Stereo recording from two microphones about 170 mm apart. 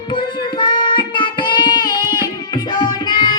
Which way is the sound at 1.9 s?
25° left (ahead or behind).